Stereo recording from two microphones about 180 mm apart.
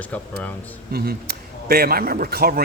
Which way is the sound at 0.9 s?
60° right (ahead or behind).